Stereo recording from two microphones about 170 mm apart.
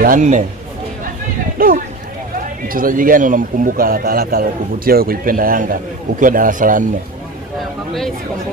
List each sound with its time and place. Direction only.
0.0 s a man's voice: 50° right (ahead or behind)
1.6 s a man's voice: 60° right (ahead or behind)